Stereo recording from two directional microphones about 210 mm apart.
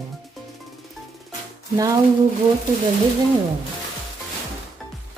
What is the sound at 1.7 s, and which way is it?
Speech, 15° right (ahead or behind).